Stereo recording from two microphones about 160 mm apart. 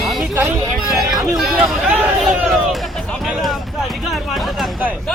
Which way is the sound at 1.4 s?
Centre (ahead or behind).